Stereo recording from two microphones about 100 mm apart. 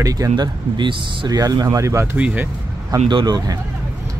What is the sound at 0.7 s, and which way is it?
Speech, 50° right (ahead or behind).